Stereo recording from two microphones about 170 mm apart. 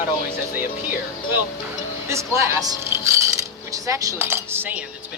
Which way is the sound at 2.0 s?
15° right (ahead or behind).